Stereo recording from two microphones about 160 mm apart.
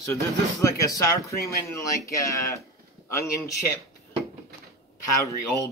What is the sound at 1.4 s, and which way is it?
Speech, 75° left (ahead or behind).